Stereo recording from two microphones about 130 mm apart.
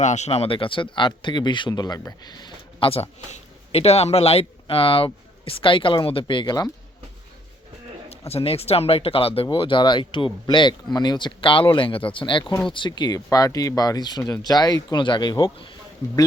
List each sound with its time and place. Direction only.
0.0 s speech: 65° left (ahead or behind); by 2.9 s 35° left (ahead or behind)
2.9 s speech: 50° left (ahead or behind); by 6.7 s 35° left (ahead or behind)
8.3 s speech: 50° left (ahead or behind)